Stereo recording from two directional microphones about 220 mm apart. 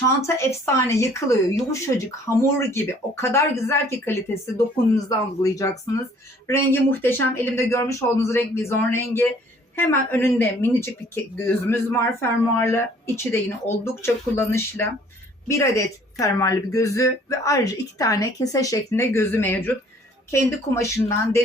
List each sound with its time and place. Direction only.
0.2 s speech: 10° left (ahead or behind)